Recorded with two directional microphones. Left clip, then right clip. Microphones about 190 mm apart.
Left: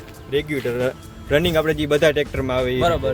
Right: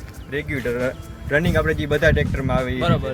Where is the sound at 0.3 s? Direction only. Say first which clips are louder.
Left 4 dB; 85° left.